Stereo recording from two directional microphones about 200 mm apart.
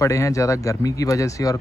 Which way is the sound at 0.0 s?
15° left (ahead or behind).